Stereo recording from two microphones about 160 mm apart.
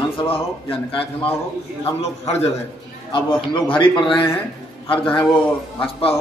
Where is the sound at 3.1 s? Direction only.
30° left (ahead or behind).